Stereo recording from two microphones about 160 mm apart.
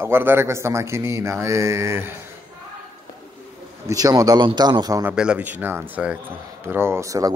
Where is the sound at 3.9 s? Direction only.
25° right (ahead or behind).